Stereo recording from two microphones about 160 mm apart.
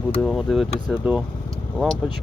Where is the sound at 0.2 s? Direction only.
Centre (ahead or behind).